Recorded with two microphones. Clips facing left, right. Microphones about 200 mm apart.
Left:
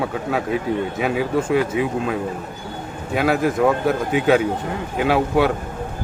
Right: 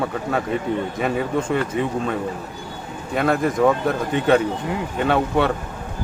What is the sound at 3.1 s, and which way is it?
Speech, 5° left (ahead or behind).